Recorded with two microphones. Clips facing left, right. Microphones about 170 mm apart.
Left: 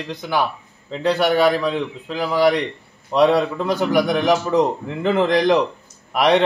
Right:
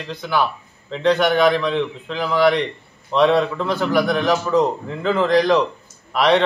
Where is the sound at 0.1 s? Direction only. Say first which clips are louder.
Right 1 dB; 15° left (ahead or behind).